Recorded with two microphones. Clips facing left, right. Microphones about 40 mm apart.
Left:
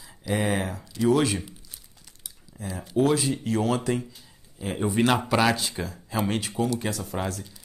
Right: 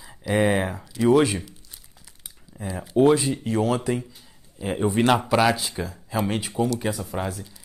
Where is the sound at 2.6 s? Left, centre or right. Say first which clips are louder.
Right 4 dB; centre.